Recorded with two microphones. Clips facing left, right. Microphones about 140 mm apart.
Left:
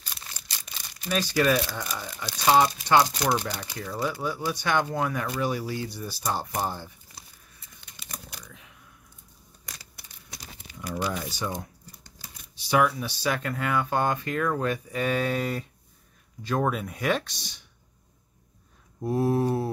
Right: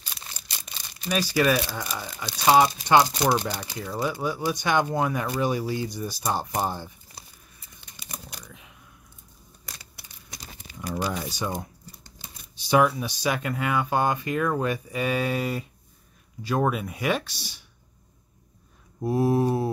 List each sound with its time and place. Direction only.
1.1 s speech: 10° right (ahead or behind)
8.5 s a sound: 15° right (ahead or behind)
10.9 s crumpling: 35° right (ahead or behind)
11.2 s speech: 15° right (ahead or behind)
18.9 s speech: 10° right (ahead or behind)